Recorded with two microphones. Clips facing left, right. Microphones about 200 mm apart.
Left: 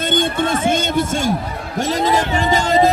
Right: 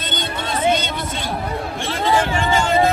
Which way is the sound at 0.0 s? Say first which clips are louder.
Left 9 dB; 50° left (ahead or behind).